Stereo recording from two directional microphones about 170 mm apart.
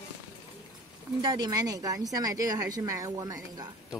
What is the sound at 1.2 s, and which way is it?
Speech, 25° right (ahead or behind).